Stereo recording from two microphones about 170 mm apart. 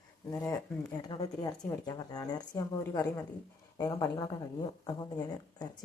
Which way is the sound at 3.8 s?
20° left (ahead or behind).